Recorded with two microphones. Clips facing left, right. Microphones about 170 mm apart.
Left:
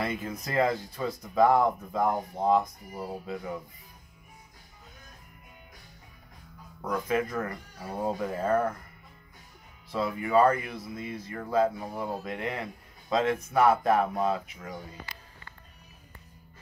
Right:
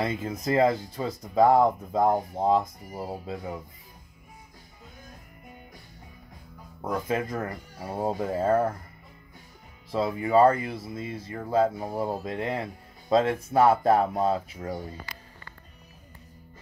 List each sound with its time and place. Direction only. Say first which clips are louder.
0.0 s speech: right 3 dB; 25° right (ahead or behind)
7.1 s speech: left 2 dB; 25° right (ahead or behind)
9.9 s speech: right 3 dB; 30° right (ahead or behind)